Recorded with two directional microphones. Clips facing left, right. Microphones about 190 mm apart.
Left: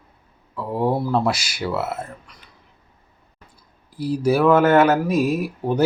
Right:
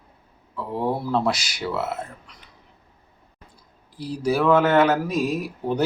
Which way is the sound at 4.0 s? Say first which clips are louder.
Left 4 dB; 5° left (ahead or behind).